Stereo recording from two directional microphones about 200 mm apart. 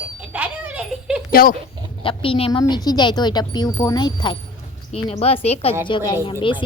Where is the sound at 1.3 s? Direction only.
45° left (ahead or behind).